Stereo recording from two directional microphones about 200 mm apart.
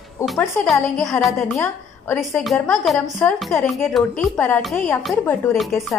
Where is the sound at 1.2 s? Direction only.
Centre (ahead or behind).